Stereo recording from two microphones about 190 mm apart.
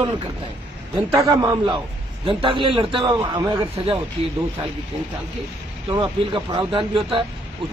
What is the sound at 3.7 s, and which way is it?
Speech, 30° right (ahead or behind).